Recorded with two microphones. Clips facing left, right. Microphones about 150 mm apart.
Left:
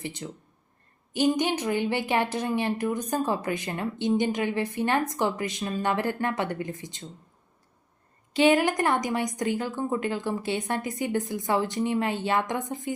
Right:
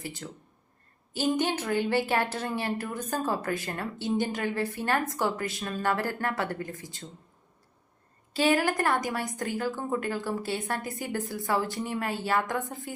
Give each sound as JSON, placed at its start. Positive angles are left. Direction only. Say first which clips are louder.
{"t": 0.0, "sound": "a woman's voice", "louder": "left 3 dB", "side_deg": 20}
{"t": 8.3, "sound": "a woman's voice", "louder": "left 4 dB", "side_deg": 20}